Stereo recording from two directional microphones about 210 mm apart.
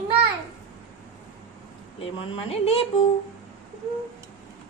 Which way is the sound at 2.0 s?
25° left (ahead or behind).